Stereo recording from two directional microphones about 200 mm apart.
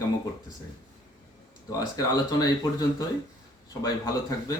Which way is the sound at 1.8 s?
20° left (ahead or behind).